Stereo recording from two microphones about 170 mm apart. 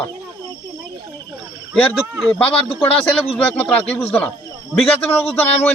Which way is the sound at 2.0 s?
Centre (ahead or behind).